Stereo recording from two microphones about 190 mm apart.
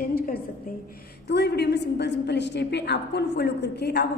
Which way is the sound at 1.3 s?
60° left (ahead or behind).